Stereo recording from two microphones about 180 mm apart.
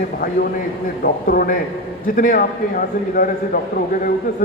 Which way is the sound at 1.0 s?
50° left (ahead or behind).